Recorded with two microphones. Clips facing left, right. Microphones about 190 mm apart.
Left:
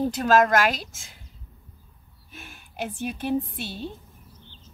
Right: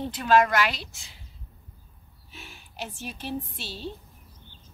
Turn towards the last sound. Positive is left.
turn(degrees=50)  # may be behind; listen again after turning